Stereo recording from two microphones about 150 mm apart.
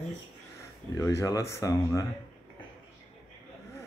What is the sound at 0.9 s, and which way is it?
Speech, 20° left (ahead or behind).